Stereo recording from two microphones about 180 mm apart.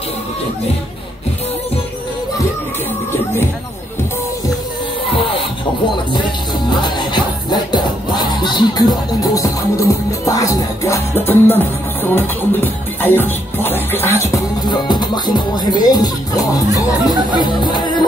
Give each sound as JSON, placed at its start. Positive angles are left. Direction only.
{"t": 6.7, "sound": "music", "side_deg": 25}